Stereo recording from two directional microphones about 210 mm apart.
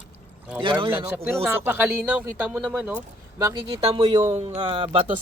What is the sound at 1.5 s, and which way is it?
Speech, 10° right (ahead or behind).